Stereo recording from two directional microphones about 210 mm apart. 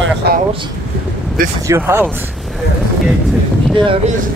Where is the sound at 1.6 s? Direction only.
10° right (ahead or behind).